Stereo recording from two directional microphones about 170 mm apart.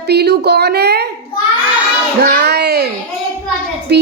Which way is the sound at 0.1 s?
70° right (ahead or behind).